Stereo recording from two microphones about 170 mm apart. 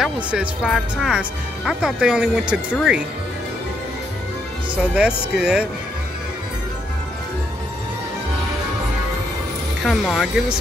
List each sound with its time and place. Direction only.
0.0 s speech: 5° right (ahead or behind)
4.7 s speech: 5° right (ahead or behind)
9.8 s speech: centre (ahead or behind)